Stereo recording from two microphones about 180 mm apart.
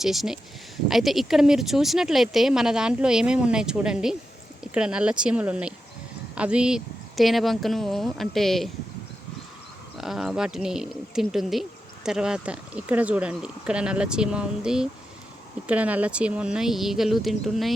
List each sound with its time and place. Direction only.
0.0 s speech: centre (ahead or behind)
10.0 s speech: centre (ahead or behind)